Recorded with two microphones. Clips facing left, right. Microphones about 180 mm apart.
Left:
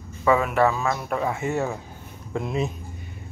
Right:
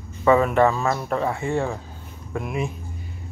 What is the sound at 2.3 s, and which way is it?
Speech, 25° left (ahead or behind).